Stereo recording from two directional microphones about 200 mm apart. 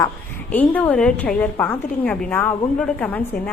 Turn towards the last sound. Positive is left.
turn(degrees=10)  # may be behind; listen again after turning